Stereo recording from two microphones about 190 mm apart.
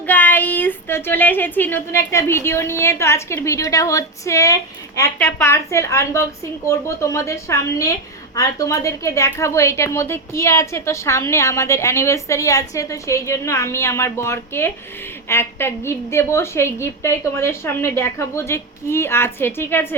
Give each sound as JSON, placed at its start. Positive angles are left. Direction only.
{"t": 0.0, "sound": "a woman's voice", "side_deg": 10}